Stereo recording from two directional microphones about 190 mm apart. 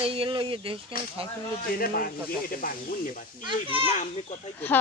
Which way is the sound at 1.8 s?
50° left (ahead or behind).